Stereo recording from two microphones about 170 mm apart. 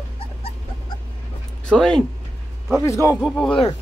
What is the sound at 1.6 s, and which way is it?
Speech, 5° left (ahead or behind).